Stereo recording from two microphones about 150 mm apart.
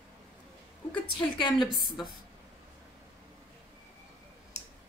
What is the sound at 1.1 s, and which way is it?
Speech, 35° left (ahead or behind).